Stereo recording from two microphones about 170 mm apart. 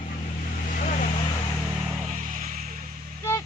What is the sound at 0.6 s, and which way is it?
Vehicle, 50° left (ahead or behind).